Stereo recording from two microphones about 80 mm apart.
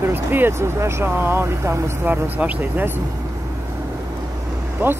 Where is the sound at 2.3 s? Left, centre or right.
Centre.